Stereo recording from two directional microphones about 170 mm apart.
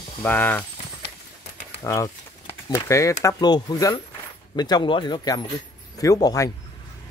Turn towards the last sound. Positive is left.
turn(degrees=20)  # may be behind; listen again after turning